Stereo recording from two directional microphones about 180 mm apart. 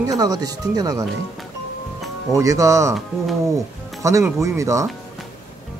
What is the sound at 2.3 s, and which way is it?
Speech, 15° right (ahead or behind).